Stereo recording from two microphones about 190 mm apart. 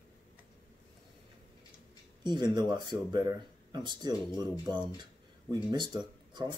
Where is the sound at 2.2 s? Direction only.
25° right (ahead or behind).